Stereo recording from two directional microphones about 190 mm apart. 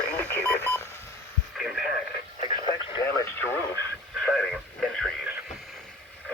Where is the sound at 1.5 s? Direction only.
5° right (ahead or behind).